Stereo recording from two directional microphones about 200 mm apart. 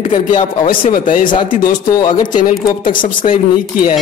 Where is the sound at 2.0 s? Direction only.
20° left (ahead or behind).